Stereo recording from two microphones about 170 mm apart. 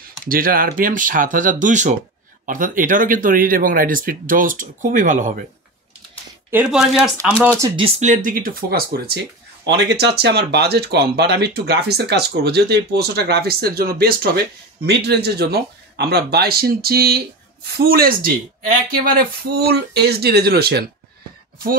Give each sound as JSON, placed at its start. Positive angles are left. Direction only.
{"t": 0.3, "sound": "speech", "side_deg": -55}
{"t": 6.5, "sound": "speech", "side_deg": -5}
{"t": 8.0, "sound": "speech", "side_deg": -50}
{"t": 9.7, "sound": "speech", "side_deg": -80}
{"t": 14.9, "sound": "speech", "side_deg": -75}